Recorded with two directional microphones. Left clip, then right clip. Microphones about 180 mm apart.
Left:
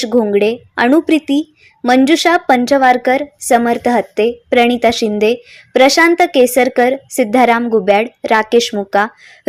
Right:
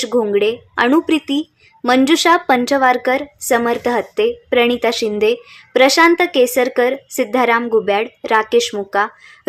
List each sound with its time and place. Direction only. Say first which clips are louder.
0.0 s a woman's voice: left 3 dB; 15° left (ahead or behind)